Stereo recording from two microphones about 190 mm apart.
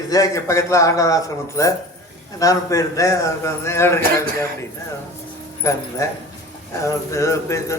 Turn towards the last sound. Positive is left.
turn(degrees=15)  # may be behind; listen again after turning